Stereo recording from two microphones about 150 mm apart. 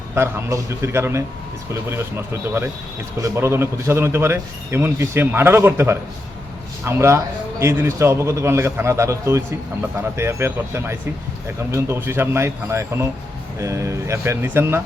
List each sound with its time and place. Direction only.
0.1 s a man's voice: 15° right (ahead or behind)